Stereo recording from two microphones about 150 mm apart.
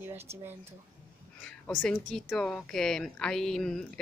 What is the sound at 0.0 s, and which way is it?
Speech, 15° right (ahead or behind).